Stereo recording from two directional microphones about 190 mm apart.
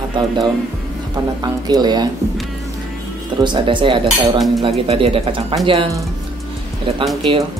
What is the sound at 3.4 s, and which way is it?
Speech, 25° right (ahead or behind).